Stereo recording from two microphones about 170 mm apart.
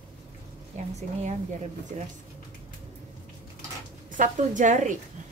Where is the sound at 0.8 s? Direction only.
45° right (ahead or behind).